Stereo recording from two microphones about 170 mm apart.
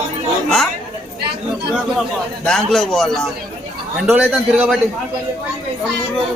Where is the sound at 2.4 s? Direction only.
5° left (ahead or behind).